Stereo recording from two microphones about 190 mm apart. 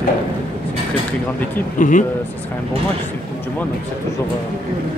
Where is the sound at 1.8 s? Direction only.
45° left (ahead or behind).